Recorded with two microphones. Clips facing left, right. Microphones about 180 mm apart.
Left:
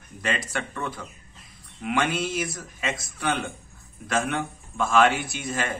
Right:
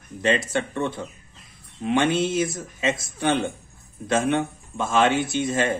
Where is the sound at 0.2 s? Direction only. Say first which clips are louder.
Right 7 dB; 25° right (ahead or behind).